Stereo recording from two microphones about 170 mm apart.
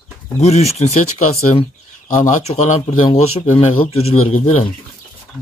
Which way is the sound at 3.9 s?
35° left (ahead or behind).